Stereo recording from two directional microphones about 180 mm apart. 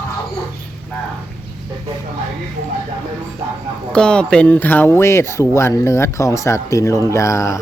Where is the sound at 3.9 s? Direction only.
5° left (ahead or behind).